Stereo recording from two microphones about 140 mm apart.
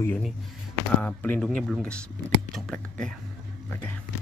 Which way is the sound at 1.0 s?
15° left (ahead or behind).